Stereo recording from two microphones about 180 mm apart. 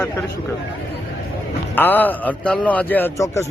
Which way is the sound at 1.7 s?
10° left (ahead or behind).